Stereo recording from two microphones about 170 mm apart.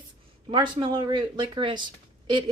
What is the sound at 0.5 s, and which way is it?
Speech, 25° right (ahead or behind).